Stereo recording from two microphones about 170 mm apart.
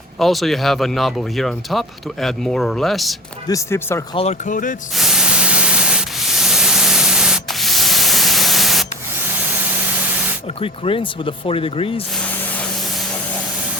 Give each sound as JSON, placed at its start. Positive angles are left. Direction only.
{"t": 0.2, "sound": "speech", "side_deg": 0}
{"t": 3.4, "sound": "speech", "side_deg": 15}
{"t": 4.1, "sound": "speech", "side_deg": 35}
{"t": 4.4, "sound": "speech", "side_deg": 50}
{"t": 4.9, "sound": "spray", "side_deg": -5}
{"t": 10.6, "sound": "speech", "side_deg": 30}